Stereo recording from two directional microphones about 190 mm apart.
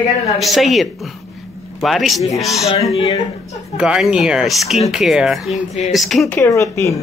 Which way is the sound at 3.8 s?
5° right (ahead or behind).